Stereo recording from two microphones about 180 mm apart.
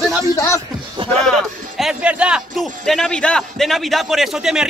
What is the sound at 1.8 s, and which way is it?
A man's voice, 5° right (ahead or behind).